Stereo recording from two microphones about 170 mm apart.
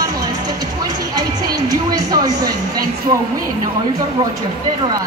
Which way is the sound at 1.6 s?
20° right (ahead or behind).